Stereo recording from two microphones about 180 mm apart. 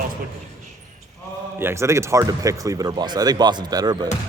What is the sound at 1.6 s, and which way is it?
Speech, 15° right (ahead or behind).